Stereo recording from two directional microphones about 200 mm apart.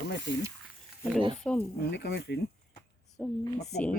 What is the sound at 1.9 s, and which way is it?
Speech, 60° left (ahead or behind).